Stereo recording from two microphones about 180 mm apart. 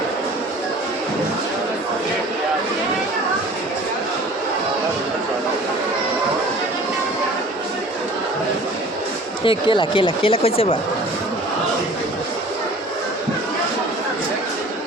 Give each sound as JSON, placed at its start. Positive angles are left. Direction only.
{"t": 9.4, "sound": "speech", "side_deg": 30}